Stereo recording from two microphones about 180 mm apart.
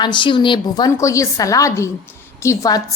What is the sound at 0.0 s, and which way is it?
A woman's voice, 25° left (ahead or behind).